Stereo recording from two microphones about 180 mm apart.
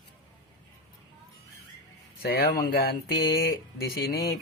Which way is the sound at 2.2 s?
55° left (ahead or behind).